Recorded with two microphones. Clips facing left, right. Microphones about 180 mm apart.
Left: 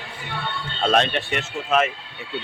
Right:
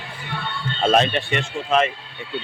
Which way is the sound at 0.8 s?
5° right (ahead or behind).